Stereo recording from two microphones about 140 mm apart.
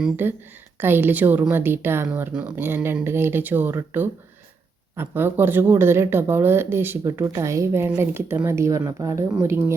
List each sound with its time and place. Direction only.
0.0 s speech: 15° right (ahead or behind)